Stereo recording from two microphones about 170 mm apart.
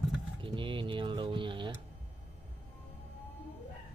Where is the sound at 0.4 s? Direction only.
30° right (ahead or behind).